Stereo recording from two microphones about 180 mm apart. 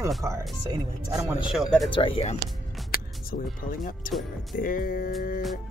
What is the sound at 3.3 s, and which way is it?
Speech, 65° left (ahead or behind).